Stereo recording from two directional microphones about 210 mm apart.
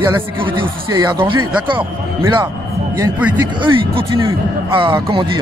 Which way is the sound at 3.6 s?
25° right (ahead or behind).